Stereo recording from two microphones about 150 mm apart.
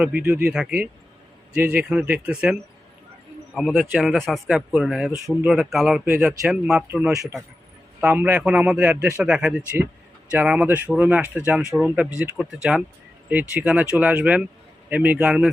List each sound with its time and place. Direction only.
0.0 s a man's voice: 10° right (ahead or behind)
7.1 s speech: 25° right (ahead or behind)
8.0 s a man's voice: 10° right (ahead or behind)